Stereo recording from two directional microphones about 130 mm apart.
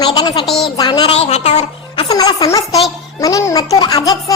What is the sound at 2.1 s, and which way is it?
A woman's voice, 30° left (ahead or behind).